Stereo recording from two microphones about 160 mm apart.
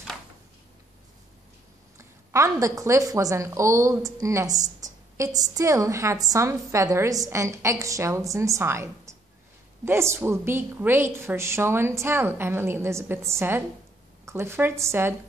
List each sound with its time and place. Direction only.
2.0 s a woman's voice: 20° right (ahead or behind)